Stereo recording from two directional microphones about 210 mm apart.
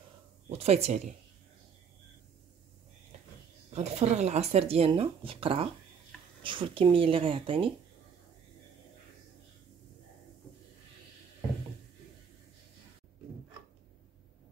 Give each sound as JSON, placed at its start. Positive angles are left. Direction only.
{"t": 0.5, "sound": "speech", "side_deg": -30}
{"t": 3.7, "sound": "speech", "side_deg": -30}